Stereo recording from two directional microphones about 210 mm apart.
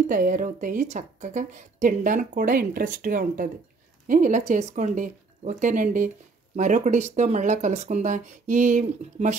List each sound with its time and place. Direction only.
0.0 s speech: 40° right (ahead or behind)